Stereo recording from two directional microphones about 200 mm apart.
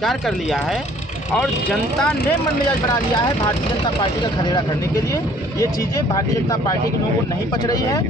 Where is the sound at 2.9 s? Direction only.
20° left (ahead or behind).